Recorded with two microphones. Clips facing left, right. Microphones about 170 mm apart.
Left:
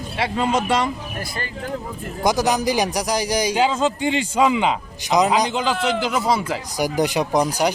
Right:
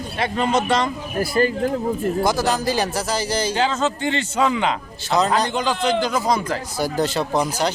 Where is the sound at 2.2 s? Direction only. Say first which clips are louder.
Left 5 dB; 15° left (ahead or behind).